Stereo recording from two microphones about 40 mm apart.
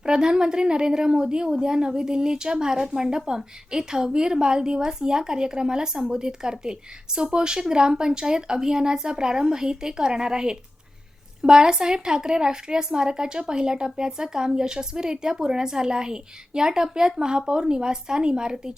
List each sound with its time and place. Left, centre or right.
0.0 s a woman's voice: centre